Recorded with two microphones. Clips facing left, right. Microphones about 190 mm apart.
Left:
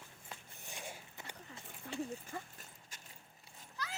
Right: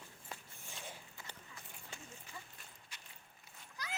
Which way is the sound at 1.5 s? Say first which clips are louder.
Left 11 dB; 35° left (ahead or behind).